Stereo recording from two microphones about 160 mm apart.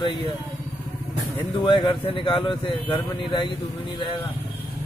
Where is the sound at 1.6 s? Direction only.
30° left (ahead or behind).